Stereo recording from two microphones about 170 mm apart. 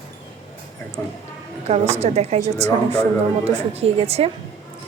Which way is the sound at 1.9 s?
40° right (ahead or behind).